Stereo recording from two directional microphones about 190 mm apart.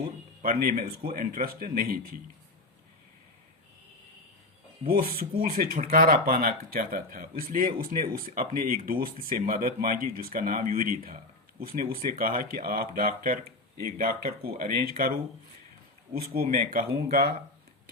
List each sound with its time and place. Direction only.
0.4 s speech: 50° right (ahead or behind)
4.9 s speech: 50° right (ahead or behind)
16.3 s speech: 50° right (ahead or behind)